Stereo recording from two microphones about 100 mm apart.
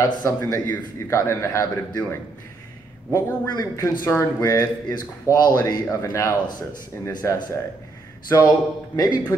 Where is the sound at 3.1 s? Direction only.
30° left (ahead or behind).